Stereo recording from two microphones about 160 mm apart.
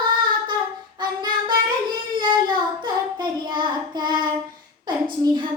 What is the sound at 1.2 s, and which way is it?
Child singing, 30° right (ahead or behind).